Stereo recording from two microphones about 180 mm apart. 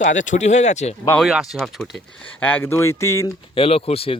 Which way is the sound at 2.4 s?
10° left (ahead or behind).